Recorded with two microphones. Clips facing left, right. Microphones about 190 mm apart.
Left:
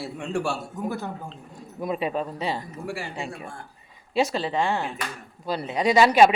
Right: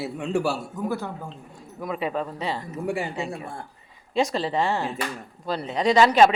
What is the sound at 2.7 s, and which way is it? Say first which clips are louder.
Speech: right 5 dB; 20° right (ahead or behind).